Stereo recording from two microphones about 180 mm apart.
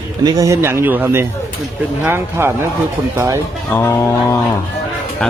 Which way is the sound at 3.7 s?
15° left (ahead or behind).